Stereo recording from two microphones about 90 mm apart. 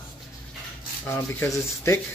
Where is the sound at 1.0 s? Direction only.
25° left (ahead or behind).